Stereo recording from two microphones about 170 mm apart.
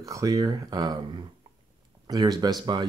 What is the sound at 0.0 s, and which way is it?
Speech, 20° right (ahead or behind).